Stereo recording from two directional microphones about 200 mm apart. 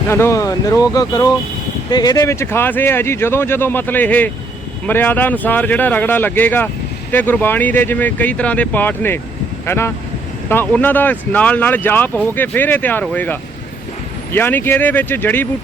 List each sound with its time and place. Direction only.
0.1 s speech: 15° left (ahead or behind)